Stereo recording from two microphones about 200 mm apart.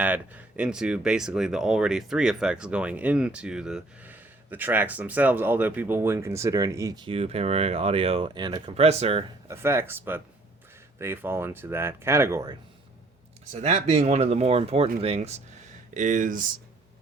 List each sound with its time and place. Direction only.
0.0 s speech: 10° right (ahead or behind); by 9.2 s 30° right (ahead or behind)
9.5 s speech: 10° right (ahead or behind)
13.5 s speech: 35° right (ahead or behind)